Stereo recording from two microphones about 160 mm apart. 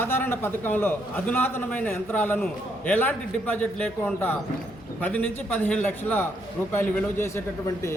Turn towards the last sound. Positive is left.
turn(degrees=15)  # may be behind; listen again after turning